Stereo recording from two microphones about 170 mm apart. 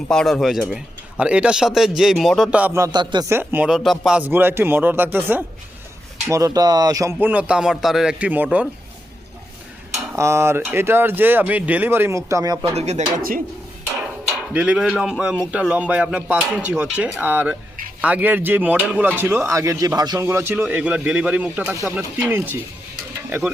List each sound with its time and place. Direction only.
0.1 s a man's voice: 5° left (ahead or behind)
10.2 s speech: 15° right (ahead or behind)
12.7 s speech: 40° right (ahead or behind)
14.5 s a man's voice: 5° right (ahead or behind)